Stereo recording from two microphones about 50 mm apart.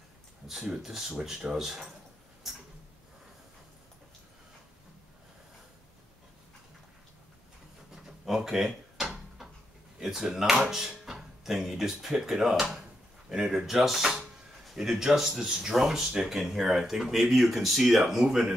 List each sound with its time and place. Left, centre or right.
0.5 s speech: centre
2.4 s tick-tock: centre
7.9 s drawer open or close: centre
9.9 s speech: centre